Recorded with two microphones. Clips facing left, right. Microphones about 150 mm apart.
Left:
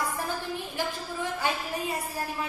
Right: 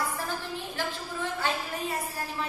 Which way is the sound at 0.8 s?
15° left (ahead or behind).